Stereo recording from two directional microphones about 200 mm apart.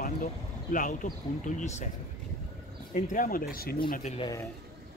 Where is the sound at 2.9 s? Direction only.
40° left (ahead or behind).